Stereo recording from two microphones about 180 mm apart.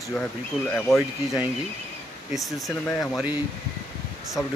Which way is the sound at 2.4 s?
20° left (ahead or behind).